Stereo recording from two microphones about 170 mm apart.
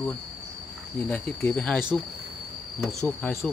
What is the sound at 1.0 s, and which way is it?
Speech, 10° left (ahead or behind).